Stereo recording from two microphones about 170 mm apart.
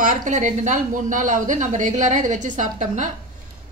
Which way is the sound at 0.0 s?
50° right (ahead or behind).